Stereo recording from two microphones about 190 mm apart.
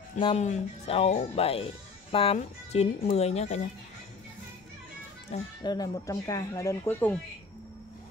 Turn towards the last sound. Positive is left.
turn(degrees=10)  # may be behind; listen again after turning